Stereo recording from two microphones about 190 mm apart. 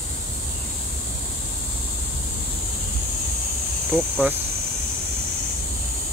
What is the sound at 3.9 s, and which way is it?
Speech, centre (ahead or behind).